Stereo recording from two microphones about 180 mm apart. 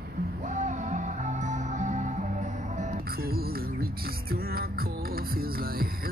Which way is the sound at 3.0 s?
55° right (ahead or behind).